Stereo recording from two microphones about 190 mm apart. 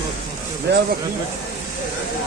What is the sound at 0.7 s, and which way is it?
Speech, 65° right (ahead or behind).